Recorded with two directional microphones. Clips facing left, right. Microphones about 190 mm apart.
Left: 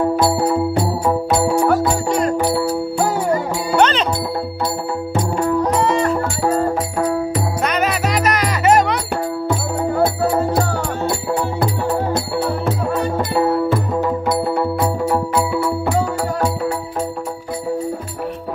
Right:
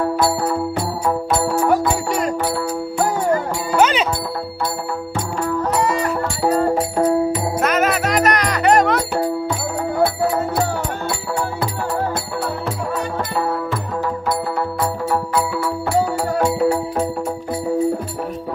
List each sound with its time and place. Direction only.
1.3 s music: 10° left (ahead or behind)
2.3 s music: 25° left (ahead or behind)
3.7 s music: 5° right (ahead or behind)
7.6 s music: centre (ahead or behind)
15.0 s music: 10° left (ahead or behind)